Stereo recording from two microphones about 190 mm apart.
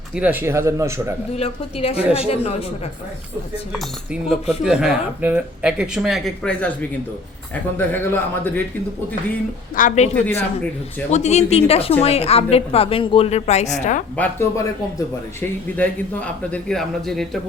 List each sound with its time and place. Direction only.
0.2 s speech: 10° right (ahead or behind)
1.4 s speech: 30° left (ahead or behind)
4.1 s speech: 5° right (ahead or behind)
7.8 s a man's voice: 10° left (ahead or behind)
9.7 s speech: 40° left (ahead or behind)
11.1 s speech: 35° left (ahead or behind)
14.2 s a man's voice: 15° left (ahead or behind)